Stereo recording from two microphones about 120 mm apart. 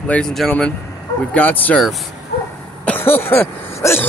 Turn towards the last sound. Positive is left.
turn(degrees=20)  # may be behind; listen again after turning